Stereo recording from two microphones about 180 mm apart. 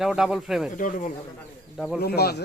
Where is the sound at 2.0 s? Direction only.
60° left (ahead or behind).